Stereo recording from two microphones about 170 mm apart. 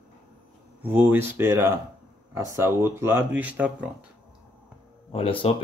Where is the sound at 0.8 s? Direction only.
10° right (ahead or behind).